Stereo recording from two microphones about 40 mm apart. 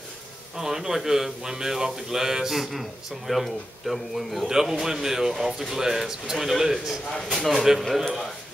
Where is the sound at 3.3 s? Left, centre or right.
Centre.